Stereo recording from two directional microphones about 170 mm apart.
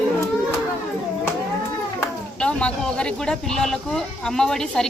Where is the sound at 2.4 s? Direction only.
5° left (ahead or behind).